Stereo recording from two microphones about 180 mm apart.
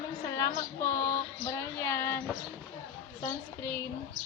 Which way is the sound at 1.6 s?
15° left (ahead or behind).